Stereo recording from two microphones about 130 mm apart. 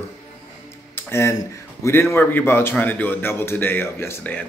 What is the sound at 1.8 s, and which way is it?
Speech, 20° left (ahead or behind).